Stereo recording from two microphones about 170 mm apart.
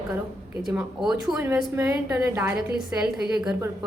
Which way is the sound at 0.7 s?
5° right (ahead or behind).